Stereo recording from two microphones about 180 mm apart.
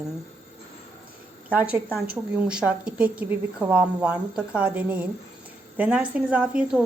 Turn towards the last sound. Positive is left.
turn(degrees=-5)  # may be behind; listen again after turning